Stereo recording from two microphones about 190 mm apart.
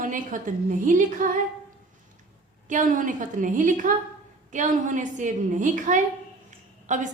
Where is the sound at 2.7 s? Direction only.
45° right (ahead or behind).